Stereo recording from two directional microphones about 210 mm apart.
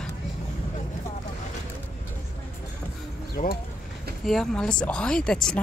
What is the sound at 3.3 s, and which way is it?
Speech, 45° left (ahead or behind).